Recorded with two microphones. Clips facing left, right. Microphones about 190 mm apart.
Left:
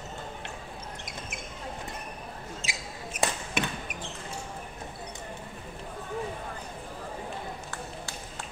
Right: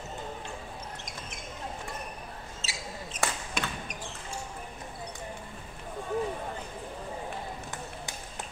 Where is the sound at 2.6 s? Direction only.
15° left (ahead or behind).